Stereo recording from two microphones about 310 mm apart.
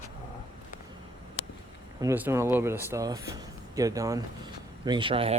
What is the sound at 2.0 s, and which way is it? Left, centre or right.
Speech, centre.